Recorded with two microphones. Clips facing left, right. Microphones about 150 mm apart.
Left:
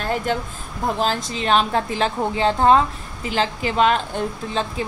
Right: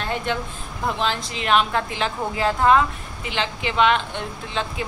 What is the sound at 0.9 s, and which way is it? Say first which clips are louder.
A woman's voice: left 3 dB; 40° left (ahead or behind).